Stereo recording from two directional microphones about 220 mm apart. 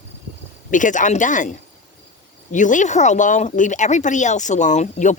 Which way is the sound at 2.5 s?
35° left (ahead or behind).